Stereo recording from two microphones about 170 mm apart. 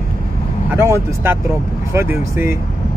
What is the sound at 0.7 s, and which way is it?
Speech, 15° right (ahead or behind).